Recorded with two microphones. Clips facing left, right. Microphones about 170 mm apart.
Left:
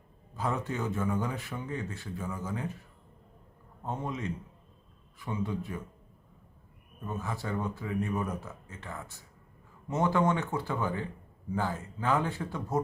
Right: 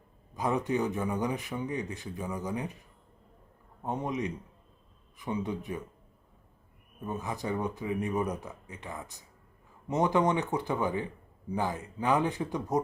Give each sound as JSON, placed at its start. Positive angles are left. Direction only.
{"t": 0.3, "sound": "a man's voice", "side_deg": -15}
{"t": 3.8, "sound": "a man's voice", "side_deg": -20}
{"t": 7.0, "sound": "a man's voice", "side_deg": -15}